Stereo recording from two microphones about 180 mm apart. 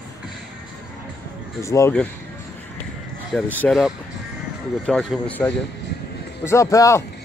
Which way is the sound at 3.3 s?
10° left (ahead or behind).